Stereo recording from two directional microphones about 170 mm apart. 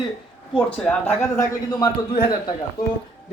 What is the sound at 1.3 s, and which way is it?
Speech, 20° left (ahead or behind).